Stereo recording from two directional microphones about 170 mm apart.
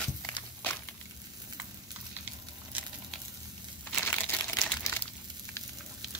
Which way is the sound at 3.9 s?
10° left (ahead or behind).